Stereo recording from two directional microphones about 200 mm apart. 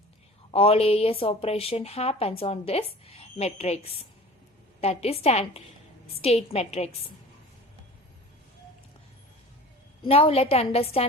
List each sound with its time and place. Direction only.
0.5 s a woman's voice: 30° left (ahead or behind)
10.1 s a woman's voice: 30° left (ahead or behind)